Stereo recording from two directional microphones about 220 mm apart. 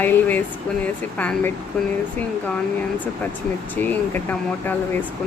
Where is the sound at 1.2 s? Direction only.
5° left (ahead or behind).